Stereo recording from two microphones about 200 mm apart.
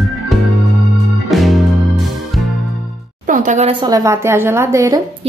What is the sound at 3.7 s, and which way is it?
A woman's voice, 20° right (ahead or behind).